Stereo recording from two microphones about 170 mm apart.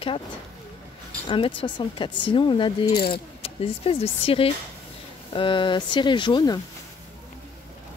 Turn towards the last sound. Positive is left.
turn(degrees=25)  # may be behind; listen again after turning